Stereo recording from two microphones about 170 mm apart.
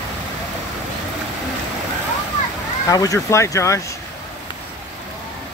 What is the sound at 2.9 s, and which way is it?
Speech, 20° left (ahead or behind).